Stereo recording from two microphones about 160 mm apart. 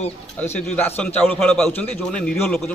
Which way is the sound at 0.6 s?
10° left (ahead or behind).